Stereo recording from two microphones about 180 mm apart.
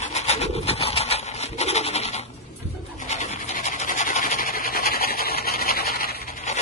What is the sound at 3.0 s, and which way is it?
Dog, 40° left (ahead or behind).